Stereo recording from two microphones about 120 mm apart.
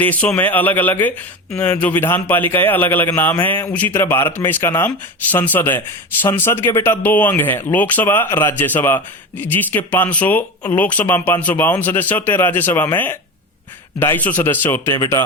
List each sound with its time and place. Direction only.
0.0 s speech: 10° left (ahead or behind)